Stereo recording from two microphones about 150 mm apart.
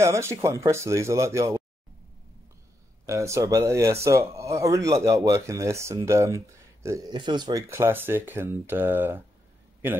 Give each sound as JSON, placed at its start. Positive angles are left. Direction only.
{"t": 0.0, "sound": "speech", "side_deg": -20}
{"t": 3.1, "sound": "speech", "side_deg": -20}